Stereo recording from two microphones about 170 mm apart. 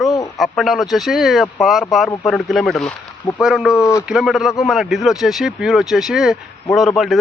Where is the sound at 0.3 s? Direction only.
Centre (ahead or behind).